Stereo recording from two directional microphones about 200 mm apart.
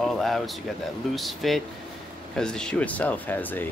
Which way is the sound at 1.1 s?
Centre (ahead or behind).